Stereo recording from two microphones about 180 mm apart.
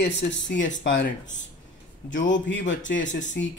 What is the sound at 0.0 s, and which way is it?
Speech, 85° left.